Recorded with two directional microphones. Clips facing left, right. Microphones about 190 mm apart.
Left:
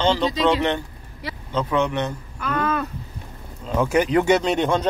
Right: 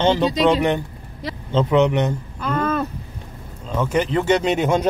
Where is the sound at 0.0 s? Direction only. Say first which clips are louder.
Right 3 dB; 15° right (ahead or behind).